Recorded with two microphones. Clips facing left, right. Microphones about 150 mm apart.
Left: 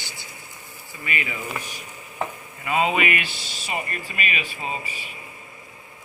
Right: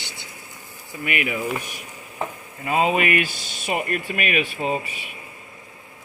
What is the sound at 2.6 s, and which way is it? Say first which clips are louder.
Speech: right 2 dB; 40° right (ahead or behind).